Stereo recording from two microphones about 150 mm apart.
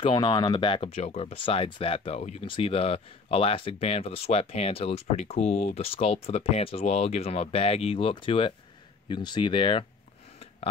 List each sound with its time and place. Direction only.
0.0 s speech: 30° left (ahead or behind)